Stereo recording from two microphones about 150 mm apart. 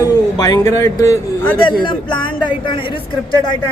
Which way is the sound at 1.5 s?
30° left (ahead or behind).